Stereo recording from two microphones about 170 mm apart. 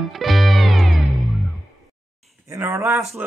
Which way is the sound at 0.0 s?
Centre (ahead or behind).